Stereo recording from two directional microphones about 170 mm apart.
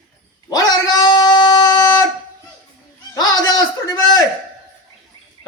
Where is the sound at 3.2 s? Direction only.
20° left (ahead or behind).